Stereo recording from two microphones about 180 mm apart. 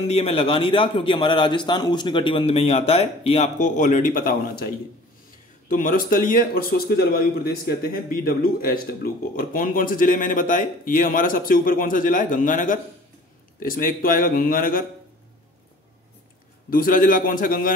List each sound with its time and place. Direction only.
0.0 s a man's voice: 35° left (ahead or behind)
5.7 s a man's voice: 45° left (ahead or behind)
16.7 s a man's voice: 50° left (ahead or behind)